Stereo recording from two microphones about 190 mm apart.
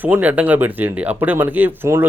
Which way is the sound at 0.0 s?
10° right (ahead or behind).